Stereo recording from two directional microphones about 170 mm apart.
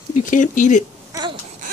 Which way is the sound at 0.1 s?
50° left (ahead or behind).